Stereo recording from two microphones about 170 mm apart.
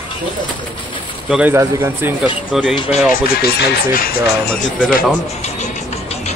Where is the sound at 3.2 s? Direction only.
60° left (ahead or behind).